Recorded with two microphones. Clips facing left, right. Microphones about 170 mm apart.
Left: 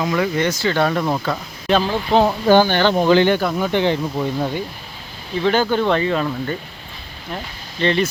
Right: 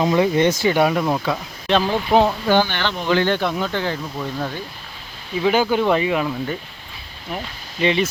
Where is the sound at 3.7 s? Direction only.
20° left (ahead or behind).